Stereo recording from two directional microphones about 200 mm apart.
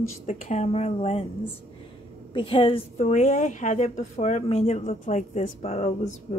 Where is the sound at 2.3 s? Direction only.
25° left (ahead or behind).